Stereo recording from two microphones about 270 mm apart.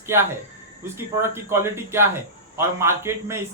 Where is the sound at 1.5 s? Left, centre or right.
Centre.